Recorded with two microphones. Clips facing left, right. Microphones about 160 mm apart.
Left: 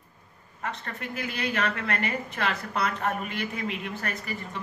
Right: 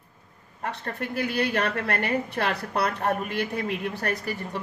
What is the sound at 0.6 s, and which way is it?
Speech, 35° right (ahead or behind).